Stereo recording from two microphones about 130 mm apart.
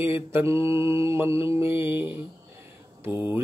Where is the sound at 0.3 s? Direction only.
20° right (ahead or behind).